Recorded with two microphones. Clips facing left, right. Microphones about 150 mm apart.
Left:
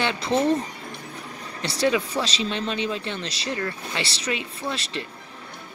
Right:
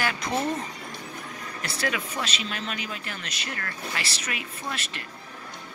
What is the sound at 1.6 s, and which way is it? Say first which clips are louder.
Speech: left 8 dB; 30° left (ahead or behind).